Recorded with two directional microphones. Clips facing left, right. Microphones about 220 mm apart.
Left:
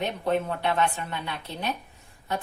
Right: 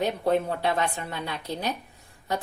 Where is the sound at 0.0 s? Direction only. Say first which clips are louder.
Right 2 dB; 35° right (ahead or behind).